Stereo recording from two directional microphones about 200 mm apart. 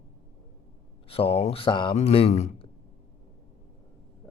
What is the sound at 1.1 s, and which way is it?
Speech, 30° left (ahead or behind).